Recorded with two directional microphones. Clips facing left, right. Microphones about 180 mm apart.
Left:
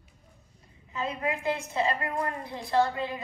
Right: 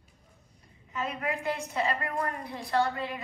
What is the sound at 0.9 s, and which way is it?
A woman's voice, 20° left (ahead or behind).